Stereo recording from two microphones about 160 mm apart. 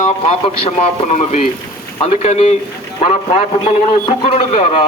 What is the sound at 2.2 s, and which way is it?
Speech, 45° left (ahead or behind).